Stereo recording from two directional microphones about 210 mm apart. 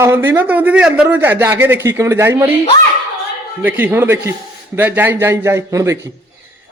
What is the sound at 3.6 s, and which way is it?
A man's voice, 5° right (ahead or behind).